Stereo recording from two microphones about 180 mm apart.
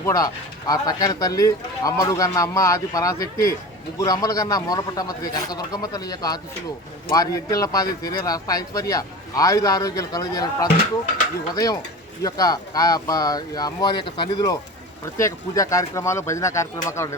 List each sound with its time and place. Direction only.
0.0 s speech: 20° left (ahead or behind)